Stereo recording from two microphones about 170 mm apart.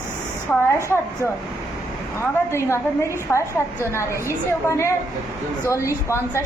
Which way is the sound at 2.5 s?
15° left (ahead or behind).